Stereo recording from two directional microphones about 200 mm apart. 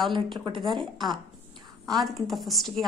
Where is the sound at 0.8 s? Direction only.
Centre (ahead or behind).